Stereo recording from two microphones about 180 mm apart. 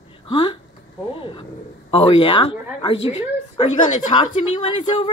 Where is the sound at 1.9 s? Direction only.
30° left (ahead or behind).